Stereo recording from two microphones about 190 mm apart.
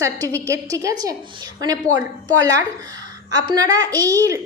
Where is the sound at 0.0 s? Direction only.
15° right (ahead or behind).